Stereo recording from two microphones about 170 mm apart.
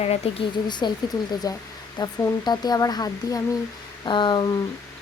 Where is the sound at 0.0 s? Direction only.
35° left (ahead or behind).